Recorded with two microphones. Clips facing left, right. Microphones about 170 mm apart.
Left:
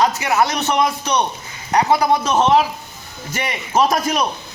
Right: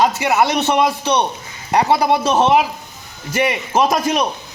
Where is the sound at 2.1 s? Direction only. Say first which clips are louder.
Right 1 dB; 15° right (ahead or behind).